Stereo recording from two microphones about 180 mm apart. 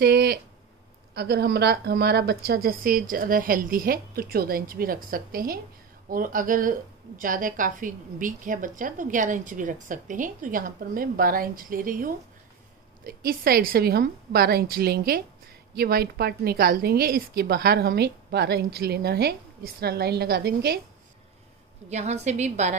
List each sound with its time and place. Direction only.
0.0 s a woman's voice: 60° right (ahead or behind)
21.8 s a woman's voice: 40° right (ahead or behind)